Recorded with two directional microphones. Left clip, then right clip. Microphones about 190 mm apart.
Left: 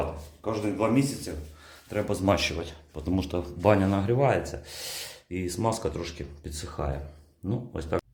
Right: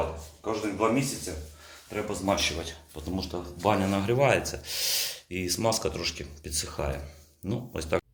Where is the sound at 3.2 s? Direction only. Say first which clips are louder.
Left 2 dB; 45° left (ahead or behind).